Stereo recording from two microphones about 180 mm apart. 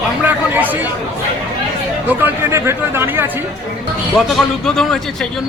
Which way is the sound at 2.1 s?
10° right (ahead or behind).